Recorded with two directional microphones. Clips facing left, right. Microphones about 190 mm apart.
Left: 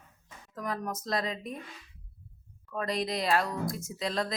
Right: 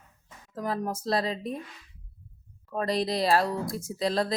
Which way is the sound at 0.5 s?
30° right (ahead or behind).